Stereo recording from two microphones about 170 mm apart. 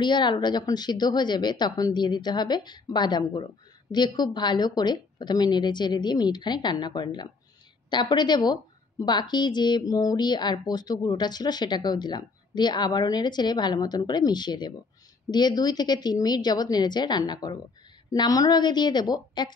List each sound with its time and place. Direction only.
0.0 s speech: 25° left (ahead or behind)